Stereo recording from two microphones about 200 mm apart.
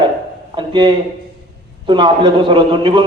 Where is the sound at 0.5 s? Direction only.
25° right (ahead or behind).